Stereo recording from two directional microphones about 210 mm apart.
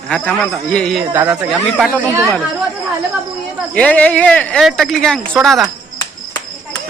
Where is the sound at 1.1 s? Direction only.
10° right (ahead or behind).